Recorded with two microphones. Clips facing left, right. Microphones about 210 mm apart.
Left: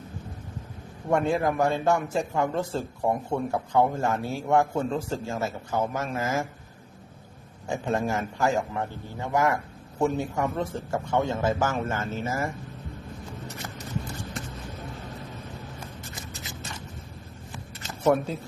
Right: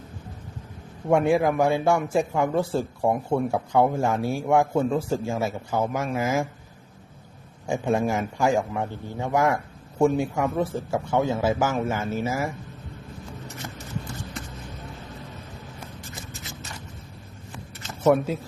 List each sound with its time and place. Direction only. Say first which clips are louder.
1.1 s a man's voice: right 4 dB; 10° right (ahead or behind)
7.7 s a man's voice: right 3 dB; 10° right (ahead or behind)
18.0 s speech: right 3 dB; centre (ahead or behind)